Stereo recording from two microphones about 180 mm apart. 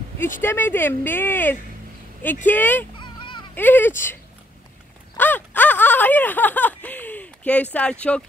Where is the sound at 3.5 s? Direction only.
10° left (ahead or behind).